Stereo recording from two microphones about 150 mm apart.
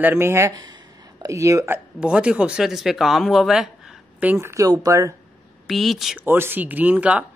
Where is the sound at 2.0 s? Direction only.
5° right (ahead or behind).